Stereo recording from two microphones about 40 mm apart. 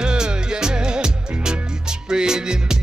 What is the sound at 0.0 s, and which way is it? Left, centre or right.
Music, right.